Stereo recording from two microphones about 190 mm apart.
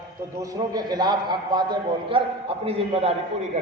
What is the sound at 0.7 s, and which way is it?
A man's voice, 20° right (ahead or behind).